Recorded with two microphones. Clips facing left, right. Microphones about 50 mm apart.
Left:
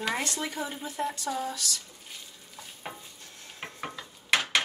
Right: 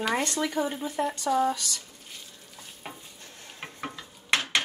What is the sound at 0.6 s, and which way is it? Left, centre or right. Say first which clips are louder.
Speech: right 9 dB; right.